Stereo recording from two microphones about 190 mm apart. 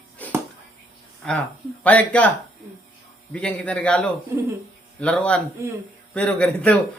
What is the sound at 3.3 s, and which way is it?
Speech, 5° left (ahead or behind).